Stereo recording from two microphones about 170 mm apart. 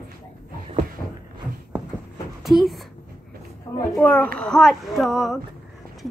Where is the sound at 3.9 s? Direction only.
10° left (ahead or behind).